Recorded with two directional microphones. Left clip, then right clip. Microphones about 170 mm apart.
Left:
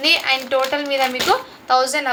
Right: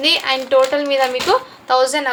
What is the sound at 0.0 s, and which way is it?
Speech, 25° right (ahead or behind).